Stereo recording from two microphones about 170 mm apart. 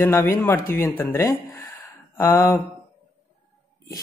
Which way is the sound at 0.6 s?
55° left (ahead or behind).